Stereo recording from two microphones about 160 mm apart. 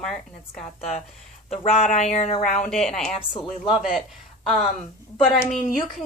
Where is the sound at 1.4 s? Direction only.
45° left (ahead or behind).